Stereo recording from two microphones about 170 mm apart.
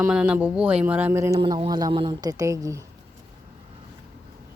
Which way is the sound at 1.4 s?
25° right (ahead or behind).